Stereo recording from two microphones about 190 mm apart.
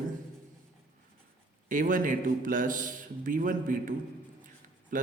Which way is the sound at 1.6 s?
45° right (ahead or behind).